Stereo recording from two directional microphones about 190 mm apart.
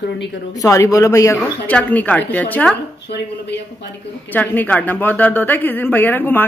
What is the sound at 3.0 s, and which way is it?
Speech, 65° left (ahead or behind).